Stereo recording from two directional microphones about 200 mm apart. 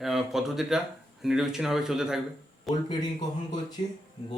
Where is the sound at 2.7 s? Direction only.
20° left (ahead or behind).